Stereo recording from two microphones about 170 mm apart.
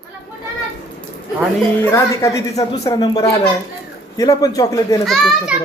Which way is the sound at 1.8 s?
20° left (ahead or behind).